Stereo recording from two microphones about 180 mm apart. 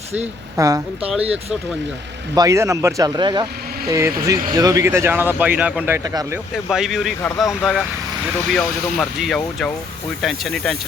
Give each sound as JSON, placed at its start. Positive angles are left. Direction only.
{"t": 0.5, "sound": "speech", "side_deg": -20}
{"t": 1.2, "sound": "speech", "side_deg": -35}
{"t": 2.3, "sound": "speech", "side_deg": -20}